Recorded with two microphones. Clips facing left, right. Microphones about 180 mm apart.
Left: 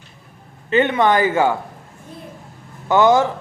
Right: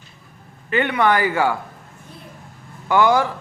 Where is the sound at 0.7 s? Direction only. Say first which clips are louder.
Left 3 dB; 20° left (ahead or behind).